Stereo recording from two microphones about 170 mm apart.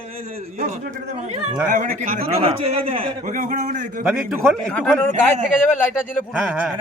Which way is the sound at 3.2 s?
45° right (ahead or behind).